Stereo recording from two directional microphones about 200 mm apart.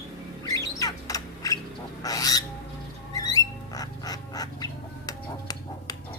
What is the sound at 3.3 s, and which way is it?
Bird, 20° left (ahead or behind).